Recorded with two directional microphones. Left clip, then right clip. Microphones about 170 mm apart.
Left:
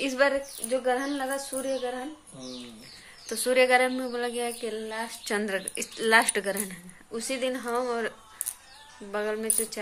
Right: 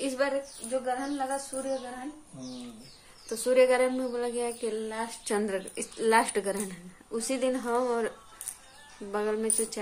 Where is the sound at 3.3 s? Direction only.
Centre (ahead or behind).